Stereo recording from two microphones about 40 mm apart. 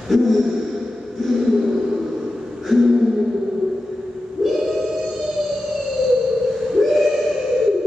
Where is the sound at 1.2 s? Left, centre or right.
Centre.